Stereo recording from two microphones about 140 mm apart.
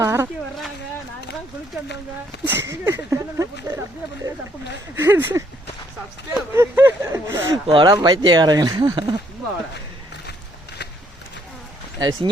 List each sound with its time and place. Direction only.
0.0 s a sound: 20° right (ahead or behind)
2.4 s speech: 15° right (ahead or behind)
4.9 s speech: 15° right (ahead or behind)
6.5 s a sound: 15° right (ahead or behind)
7.7 s speech: 35° right (ahead or behind)
11.9 s speech: 30° right (ahead or behind)